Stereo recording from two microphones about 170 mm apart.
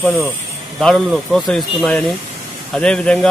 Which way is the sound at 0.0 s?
Centre (ahead or behind).